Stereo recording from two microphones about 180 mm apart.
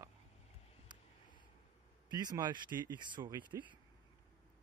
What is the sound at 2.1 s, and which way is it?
Speech, 25° right (ahead or behind).